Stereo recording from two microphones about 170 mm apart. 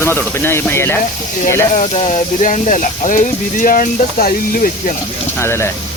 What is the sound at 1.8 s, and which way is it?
Speech, 40° left (ahead or behind).